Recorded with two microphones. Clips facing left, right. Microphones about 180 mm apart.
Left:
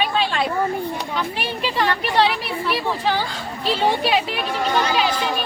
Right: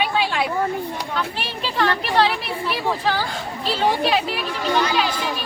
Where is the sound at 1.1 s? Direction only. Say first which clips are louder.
Left 1 dB; 10° left (ahead or behind).